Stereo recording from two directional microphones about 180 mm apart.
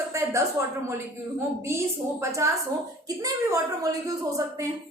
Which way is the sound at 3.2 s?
20° right (ahead or behind).